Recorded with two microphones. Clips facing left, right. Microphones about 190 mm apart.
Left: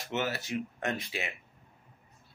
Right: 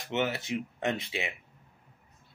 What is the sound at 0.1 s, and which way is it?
Speech, 20° right (ahead or behind).